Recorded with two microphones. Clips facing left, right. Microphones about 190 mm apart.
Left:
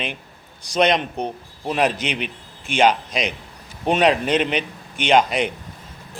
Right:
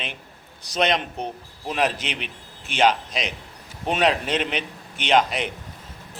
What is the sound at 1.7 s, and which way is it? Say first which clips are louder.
A man's voice: left 4 dB; 5° right (ahead or behind).